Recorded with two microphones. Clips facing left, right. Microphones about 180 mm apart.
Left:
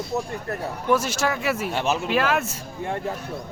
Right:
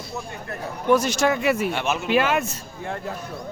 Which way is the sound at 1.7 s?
35° left (ahead or behind).